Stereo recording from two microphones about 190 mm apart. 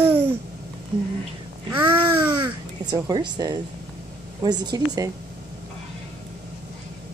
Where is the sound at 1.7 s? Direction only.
10° right (ahead or behind).